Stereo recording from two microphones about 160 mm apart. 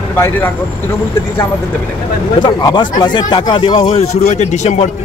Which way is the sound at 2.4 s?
25° left (ahead or behind).